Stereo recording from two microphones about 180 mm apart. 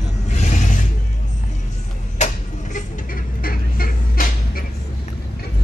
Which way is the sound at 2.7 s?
50° left (ahead or behind).